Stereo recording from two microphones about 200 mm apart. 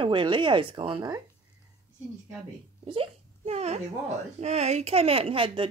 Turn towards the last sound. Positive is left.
turn(degrees=-25)  # may be behind; listen again after turning